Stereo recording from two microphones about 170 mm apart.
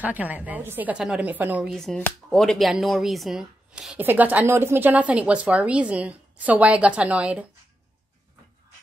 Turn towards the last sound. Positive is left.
turn(degrees=-10)  # may be behind; listen again after turning